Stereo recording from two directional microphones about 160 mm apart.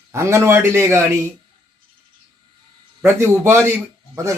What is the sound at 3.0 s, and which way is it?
A man's voice, 15° right (ahead or behind).